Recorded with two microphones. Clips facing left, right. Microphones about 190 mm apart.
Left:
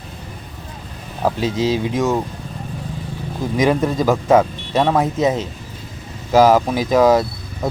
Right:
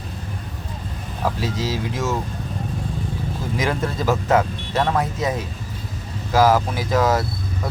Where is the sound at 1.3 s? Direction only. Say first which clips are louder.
Left 6 dB; 20° left (ahead or behind).